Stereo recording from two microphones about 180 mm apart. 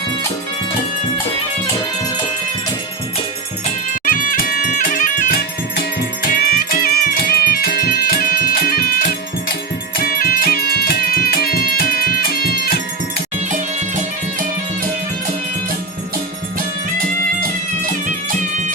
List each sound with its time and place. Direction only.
4.0 s music: 50° left (ahead or behind)
13.5 s music: 45° right (ahead or behind)
17.8 s music: 45° right (ahead or behind)